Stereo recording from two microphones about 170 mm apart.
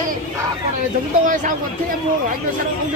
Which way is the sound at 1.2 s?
50° right (ahead or behind).